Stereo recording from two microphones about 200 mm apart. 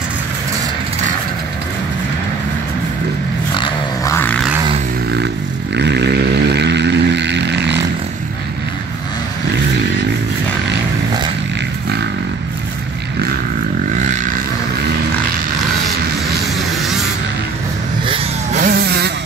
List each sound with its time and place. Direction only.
3.5 s dog: 20° left (ahead or behind)
5.8 s vehicle: 55° right (ahead or behind)
18.0 s vehicle: 25° right (ahead or behind)
18.6 s vehicle: 50° right (ahead or behind)